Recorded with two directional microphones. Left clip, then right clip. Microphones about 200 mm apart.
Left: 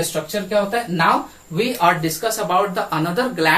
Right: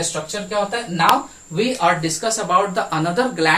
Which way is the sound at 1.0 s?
15° right (ahead or behind).